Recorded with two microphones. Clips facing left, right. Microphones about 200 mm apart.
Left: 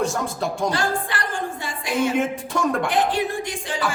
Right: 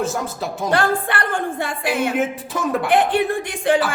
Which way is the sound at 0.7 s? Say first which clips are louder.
Right 5 dB; 60° right (ahead or behind).